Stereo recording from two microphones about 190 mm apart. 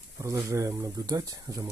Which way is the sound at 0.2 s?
15° right (ahead or behind).